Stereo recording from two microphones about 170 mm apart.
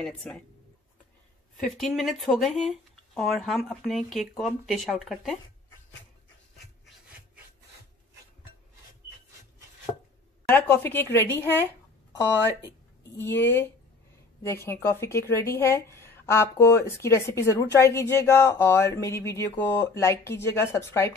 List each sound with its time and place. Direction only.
0.0 s speech: 5° left (ahead or behind)
1.6 s speech: centre (ahead or behind)
10.5 s a woman's voice: 10° left (ahead or behind)
13.2 s a woman's voice: 10° left (ahead or behind)